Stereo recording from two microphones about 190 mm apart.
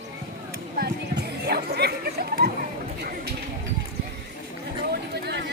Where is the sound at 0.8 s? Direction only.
60° right (ahead or behind).